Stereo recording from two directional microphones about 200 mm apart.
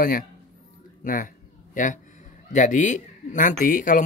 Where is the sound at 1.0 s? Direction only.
40° left (ahead or behind).